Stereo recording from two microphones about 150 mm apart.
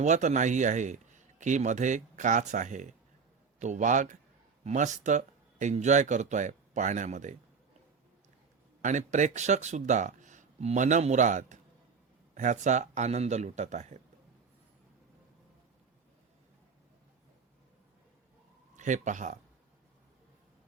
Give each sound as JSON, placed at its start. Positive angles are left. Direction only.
{"t": 0.0, "sound": "a man's voice", "side_deg": -55}
{"t": 8.8, "sound": "speech", "side_deg": -55}
{"t": 18.8, "sound": "a man's voice", "side_deg": -55}